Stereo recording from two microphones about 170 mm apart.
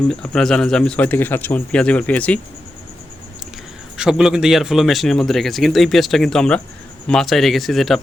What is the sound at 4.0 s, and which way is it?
Speech, 5° right (ahead or behind).